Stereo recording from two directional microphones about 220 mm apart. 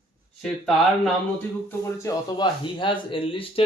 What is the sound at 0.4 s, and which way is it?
Speech, 5° left (ahead or behind).